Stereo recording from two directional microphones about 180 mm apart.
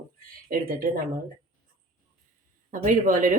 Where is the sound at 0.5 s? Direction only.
50° right (ahead or behind).